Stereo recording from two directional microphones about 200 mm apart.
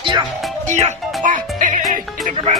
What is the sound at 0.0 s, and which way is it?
Music, 25° right (ahead or behind).